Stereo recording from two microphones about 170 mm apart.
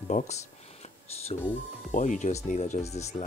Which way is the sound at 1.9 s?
45° left (ahead or behind).